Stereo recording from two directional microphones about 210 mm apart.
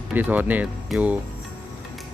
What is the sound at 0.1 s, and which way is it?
Speech, 10° right (ahead or behind).